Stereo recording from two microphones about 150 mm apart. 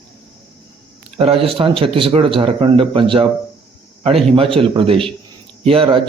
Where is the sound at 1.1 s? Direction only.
40° right (ahead or behind).